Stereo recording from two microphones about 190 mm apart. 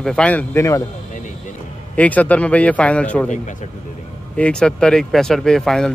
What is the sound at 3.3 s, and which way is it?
Speech, 40° left (ahead or behind).